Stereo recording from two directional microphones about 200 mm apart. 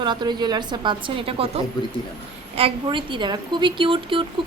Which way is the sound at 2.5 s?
25° right (ahead or behind).